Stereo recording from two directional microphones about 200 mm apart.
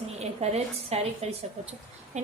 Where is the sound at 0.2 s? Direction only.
35° right (ahead or behind).